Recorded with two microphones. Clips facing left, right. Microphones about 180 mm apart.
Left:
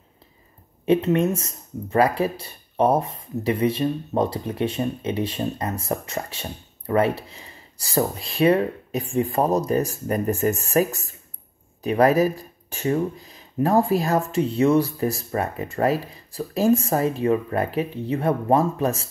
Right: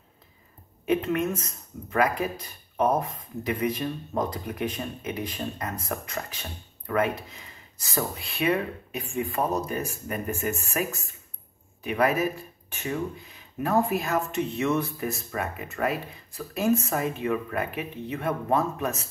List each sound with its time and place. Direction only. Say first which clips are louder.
0.8 s speech: left 6 dB; 30° left (ahead or behind)